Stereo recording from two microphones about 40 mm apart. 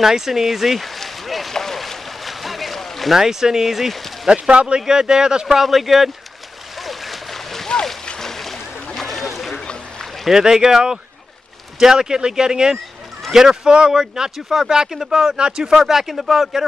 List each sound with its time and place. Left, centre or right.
0.0 s speech: centre
1.5 s a sound: centre
3.2 s speech: centre
4.3 s speech: right
5.6 s speech: centre
6.8 s a sound: centre
8.2 s splash: centre
8.9 s boat: centre
10.3 s speech: centre
15.6 s speech: centre